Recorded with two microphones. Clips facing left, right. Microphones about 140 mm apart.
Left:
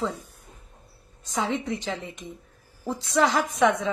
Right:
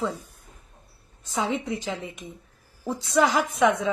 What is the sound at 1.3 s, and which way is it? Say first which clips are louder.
A woman's voice: even; centre (ahead or behind).